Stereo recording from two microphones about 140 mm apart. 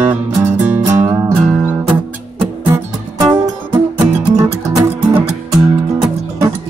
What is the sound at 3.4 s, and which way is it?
Music, 25° right (ahead or behind).